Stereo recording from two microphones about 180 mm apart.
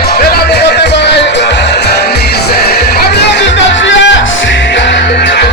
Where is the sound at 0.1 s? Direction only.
60° left (ahead or behind).